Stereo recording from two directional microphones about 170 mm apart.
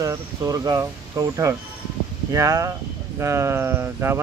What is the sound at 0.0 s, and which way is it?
Speech, 20° right (ahead or behind).